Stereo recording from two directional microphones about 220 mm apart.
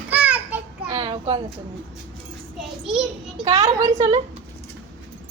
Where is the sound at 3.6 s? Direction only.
15° right (ahead or behind).